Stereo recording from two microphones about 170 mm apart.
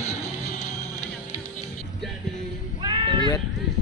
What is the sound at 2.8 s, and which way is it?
Sheep, 30° right (ahead or behind).